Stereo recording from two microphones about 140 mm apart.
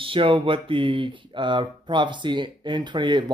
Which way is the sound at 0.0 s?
40° right (ahead or behind).